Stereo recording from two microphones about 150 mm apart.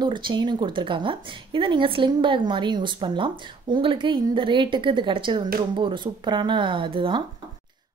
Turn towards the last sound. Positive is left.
turn(degrees=-35)  # may be behind; listen again after turning